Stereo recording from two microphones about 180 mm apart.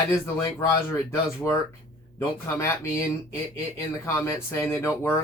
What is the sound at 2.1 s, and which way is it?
Speech, 15° left (ahead or behind).